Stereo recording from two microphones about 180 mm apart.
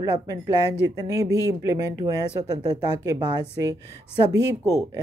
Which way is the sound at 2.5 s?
25° right (ahead or behind).